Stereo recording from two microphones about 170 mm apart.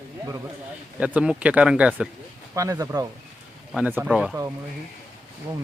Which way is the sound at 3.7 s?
10° right (ahead or behind).